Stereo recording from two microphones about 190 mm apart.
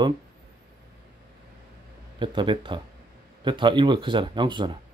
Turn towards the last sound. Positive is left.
turn(degrees=-25)  # may be behind; listen again after turning